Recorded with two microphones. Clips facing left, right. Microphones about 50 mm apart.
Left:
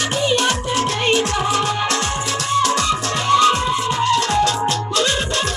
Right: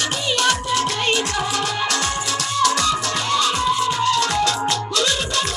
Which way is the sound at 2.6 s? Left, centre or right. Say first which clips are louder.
Even; left.